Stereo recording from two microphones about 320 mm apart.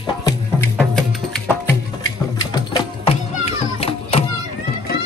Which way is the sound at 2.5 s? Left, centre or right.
Centre.